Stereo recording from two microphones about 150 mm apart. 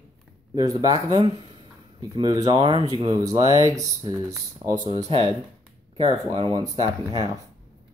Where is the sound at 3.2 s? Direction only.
25° right (ahead or behind).